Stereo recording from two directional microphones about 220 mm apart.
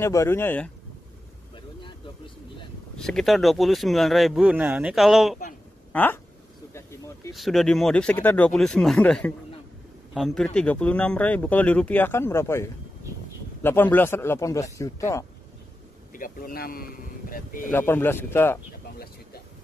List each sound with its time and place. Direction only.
0.0 s speech: 10° left (ahead or behind)
3.0 s speech: centre (ahead or behind)
7.3 s speech: centre (ahead or behind)
16.1 s speech: 40° left (ahead or behind)
17.6 s speech: 10° left (ahead or behind)